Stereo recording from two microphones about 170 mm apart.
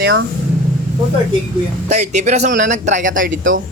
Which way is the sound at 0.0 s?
90° right.